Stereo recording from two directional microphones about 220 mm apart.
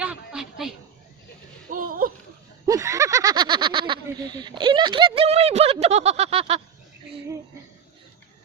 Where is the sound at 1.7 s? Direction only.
40° right (ahead or behind).